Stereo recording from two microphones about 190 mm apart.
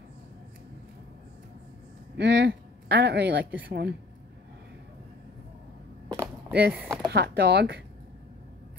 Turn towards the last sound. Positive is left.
turn(degrees=-60)  # may be behind; listen again after turning